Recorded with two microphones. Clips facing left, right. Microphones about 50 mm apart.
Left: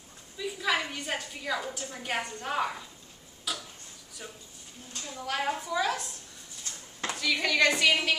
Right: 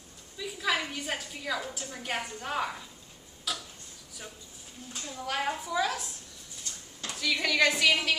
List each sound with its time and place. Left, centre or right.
0.4 s a woman's voice: centre
3.5 s tick-tock: centre
4.9 s a woman's voice: centre
6.6 s dishes: left
7.2 s a woman's voice: centre